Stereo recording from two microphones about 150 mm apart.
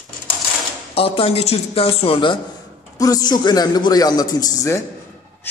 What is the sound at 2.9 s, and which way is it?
A man's voice, 25° left (ahead or behind).